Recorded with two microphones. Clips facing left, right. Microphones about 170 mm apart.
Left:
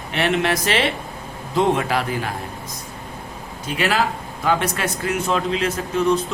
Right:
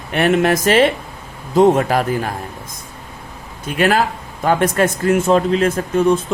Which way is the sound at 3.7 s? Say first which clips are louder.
Right 5 dB; 50° right (ahead or behind).